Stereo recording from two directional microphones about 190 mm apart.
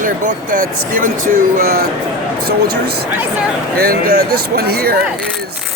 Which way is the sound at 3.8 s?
50° right (ahead or behind).